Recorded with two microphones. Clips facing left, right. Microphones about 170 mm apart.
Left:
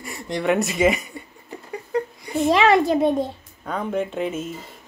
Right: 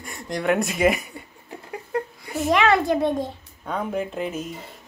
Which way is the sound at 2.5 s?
25° left (ahead or behind).